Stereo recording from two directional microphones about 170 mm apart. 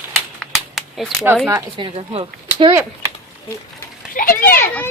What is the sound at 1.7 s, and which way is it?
Speech, 35° right (ahead or behind).